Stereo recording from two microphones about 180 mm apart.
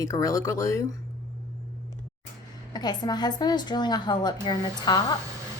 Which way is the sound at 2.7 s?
25° left (ahead or behind).